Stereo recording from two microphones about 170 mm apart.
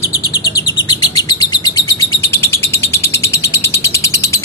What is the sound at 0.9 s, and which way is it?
Chirp, 25° left (ahead or behind).